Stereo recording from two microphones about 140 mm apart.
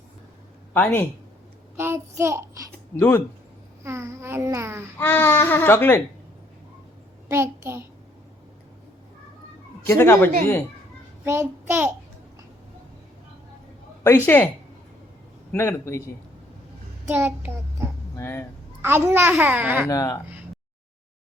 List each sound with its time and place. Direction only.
0.7 s speech: 10° left (ahead or behind)
1.7 s child singing: 15° right (ahead or behind)
2.9 s speech: 15° left (ahead or behind)
3.8 s speech: 20° right (ahead or behind)
5.0 s speech: 15° left (ahead or behind)
7.3 s a child's voice: 15° right (ahead or behind)
9.8 s speech: 15° left (ahead or behind)
11.3 s speech: 20° right (ahead or behind)
14.3 s speech: 15° left (ahead or behind)
15.5 s a man's voice: 20° left (ahead or behind)
17.1 s child singing: 15° right (ahead or behind)
18.2 s speech: 15° left (ahead or behind)
18.8 s a child's voice: 15° right (ahead or behind)
19.9 s a man's voice: 25° left (ahead or behind)